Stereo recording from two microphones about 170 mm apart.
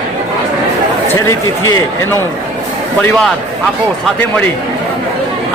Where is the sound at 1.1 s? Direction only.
15° left (ahead or behind).